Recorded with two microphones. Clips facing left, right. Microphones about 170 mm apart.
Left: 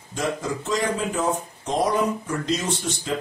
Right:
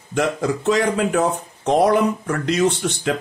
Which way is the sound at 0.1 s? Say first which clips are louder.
Right 6 dB; 70° right (ahead or behind).